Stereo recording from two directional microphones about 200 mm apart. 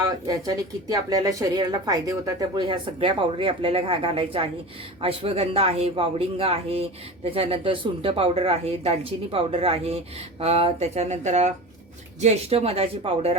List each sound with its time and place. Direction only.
0.0 s speech: 20° right (ahead or behind)